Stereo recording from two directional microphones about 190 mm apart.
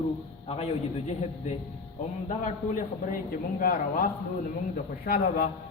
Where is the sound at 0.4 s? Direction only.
30° left (ahead or behind).